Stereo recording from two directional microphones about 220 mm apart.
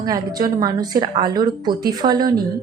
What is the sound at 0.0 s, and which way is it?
A woman's voice, 15° right (ahead or behind).